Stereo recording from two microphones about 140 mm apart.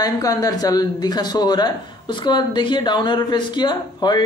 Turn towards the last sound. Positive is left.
turn(degrees=30)  # may be behind; listen again after turning